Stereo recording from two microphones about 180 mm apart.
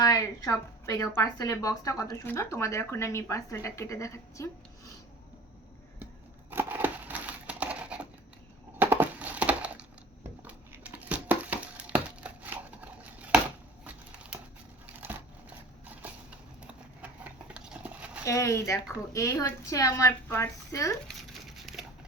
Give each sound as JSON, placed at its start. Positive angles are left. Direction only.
{"t": 0.0, "sound": "a woman's voice", "side_deg": 20}
{"t": 6.5, "sound": "a sound", "side_deg": -10}
{"t": 10.4, "sound": "crumpling", "side_deg": -10}
{"t": 17.0, "sound": "horse", "side_deg": -5}
{"t": 18.3, "sound": "a woman's voice", "side_deg": 15}
{"t": 21.5, "sound": "a sound", "side_deg": 0}